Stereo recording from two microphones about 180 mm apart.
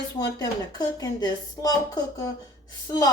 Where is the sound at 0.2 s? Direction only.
25° left (ahead or behind).